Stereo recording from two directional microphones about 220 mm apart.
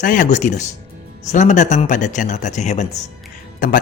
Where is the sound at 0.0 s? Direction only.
35° left (ahead or behind).